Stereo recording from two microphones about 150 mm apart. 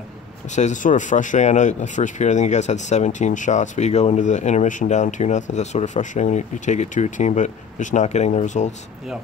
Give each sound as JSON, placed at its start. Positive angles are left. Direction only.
{"t": 0.5, "sound": "speech", "side_deg": 50}